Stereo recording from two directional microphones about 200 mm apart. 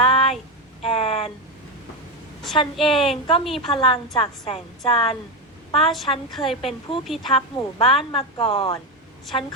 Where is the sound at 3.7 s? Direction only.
25° left (ahead or behind).